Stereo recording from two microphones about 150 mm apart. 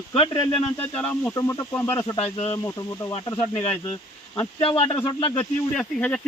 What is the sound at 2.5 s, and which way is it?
Speech, 20° left (ahead or behind).